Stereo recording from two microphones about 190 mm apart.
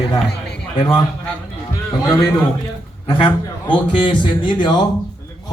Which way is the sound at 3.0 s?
25° left (ahead or behind).